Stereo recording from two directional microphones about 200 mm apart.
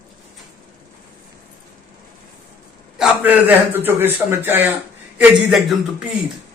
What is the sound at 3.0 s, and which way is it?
A man's voice, 10° right (ahead or behind).